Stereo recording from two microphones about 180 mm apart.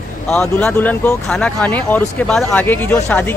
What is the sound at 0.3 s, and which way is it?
Speech, 5° left (ahead or behind).